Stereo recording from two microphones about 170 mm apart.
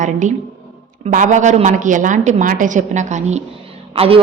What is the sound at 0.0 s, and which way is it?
A woman's voice, 45° right (ahead or behind).